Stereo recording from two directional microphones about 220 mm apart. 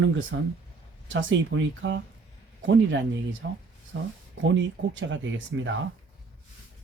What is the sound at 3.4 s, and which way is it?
Speech, 55° right (ahead or behind).